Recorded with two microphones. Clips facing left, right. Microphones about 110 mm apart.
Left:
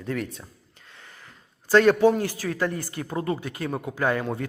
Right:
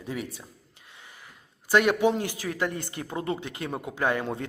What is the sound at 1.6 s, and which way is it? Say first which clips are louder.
A man's voice: left 4 dB; 15° right (ahead or behind).